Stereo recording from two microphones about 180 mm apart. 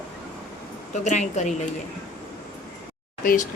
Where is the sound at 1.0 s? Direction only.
40° left (ahead or behind).